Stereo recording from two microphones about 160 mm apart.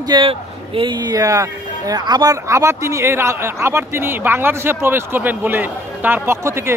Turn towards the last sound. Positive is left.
turn(degrees=-15)  # may be behind; listen again after turning